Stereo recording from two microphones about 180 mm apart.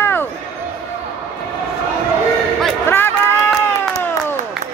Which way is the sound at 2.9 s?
10° left (ahead or behind).